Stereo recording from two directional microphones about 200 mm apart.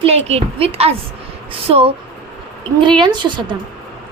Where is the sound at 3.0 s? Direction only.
20° right (ahead or behind).